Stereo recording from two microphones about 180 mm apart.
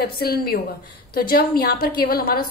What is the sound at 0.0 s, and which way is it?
A woman's voice, 60° left (ahead or behind).